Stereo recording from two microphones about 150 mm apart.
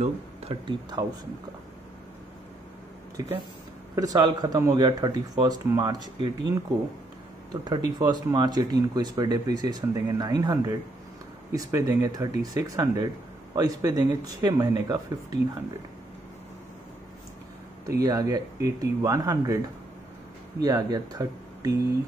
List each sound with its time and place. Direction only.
0.0 s speech: 40° right (ahead or behind)
3.2 s speech: 25° right (ahead or behind)
7.6 s speech: 25° right (ahead or behind)
17.8 s speech: 25° right (ahead or behind)
20.6 s speech: 25° right (ahead or behind)